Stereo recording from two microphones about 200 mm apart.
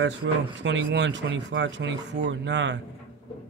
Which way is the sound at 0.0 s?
60° right (ahead or behind).